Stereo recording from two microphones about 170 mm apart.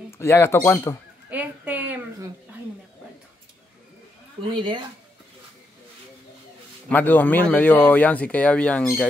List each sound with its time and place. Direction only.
0.2 s speech: 15° left (ahead or behind)
1.3 s a sound: 10° right (ahead or behind)
4.5 s speech: 30° right (ahead or behind)
6.9 s speech: 10° left (ahead or behind)